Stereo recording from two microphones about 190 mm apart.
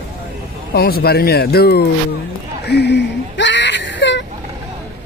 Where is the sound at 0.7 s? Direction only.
55° left (ahead or behind).